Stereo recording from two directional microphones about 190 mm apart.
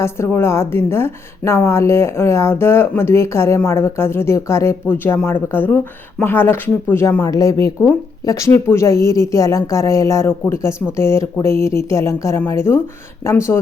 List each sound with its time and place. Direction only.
0.0 s a woman's voice: 15° left (ahead or behind)